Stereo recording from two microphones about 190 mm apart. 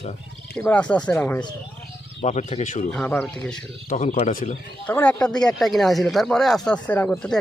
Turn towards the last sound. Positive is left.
turn(degrees=5)  # may be behind; listen again after turning